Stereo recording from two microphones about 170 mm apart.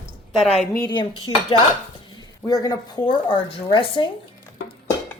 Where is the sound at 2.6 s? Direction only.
25° left (ahead or behind).